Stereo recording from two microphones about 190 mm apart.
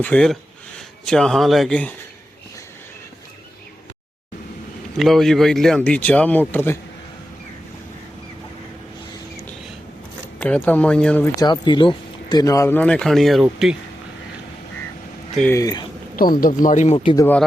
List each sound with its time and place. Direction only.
0.0 s speech: 5° left (ahead or behind)
4.9 s speech: centre (ahead or behind)
10.4 s speech: 5° left (ahead or behind)
11.3 s speech: 20° left (ahead or behind); by 13.7 s centre (ahead or behind)
15.4 s speech: 15° left (ahead or behind)
16.1 s speech: 50° left (ahead or behind); by 17.2 s 30° left (ahead or behind)
17.2 s speech: 10° left (ahead or behind)